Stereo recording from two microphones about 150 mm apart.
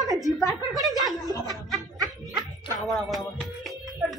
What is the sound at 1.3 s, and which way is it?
Speech, 25° left (ahead or behind).